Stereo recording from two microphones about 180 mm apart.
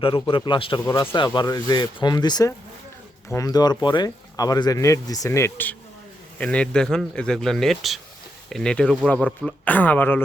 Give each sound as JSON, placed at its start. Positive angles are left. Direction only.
{"t": 0.0, "sound": "speech", "side_deg": 30}